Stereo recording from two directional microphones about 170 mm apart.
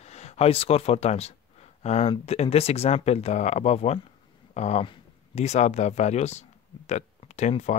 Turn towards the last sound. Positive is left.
turn(degrees=45)  # may be behind; listen again after turning